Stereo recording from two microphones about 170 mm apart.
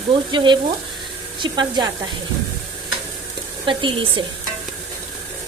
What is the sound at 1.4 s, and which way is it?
Speech, 25° right (ahead or behind).